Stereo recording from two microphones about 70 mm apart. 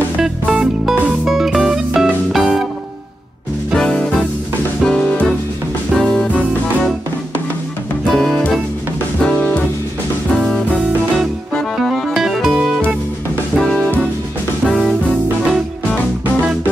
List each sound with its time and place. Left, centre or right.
0.2 s music: centre
3.7 s music: centre
8.1 s music: centre
9.2 s music: centre
11.8 s music: centre
12.2 s music: centre